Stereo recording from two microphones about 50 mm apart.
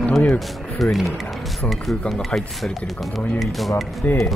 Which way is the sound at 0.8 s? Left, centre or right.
Centre.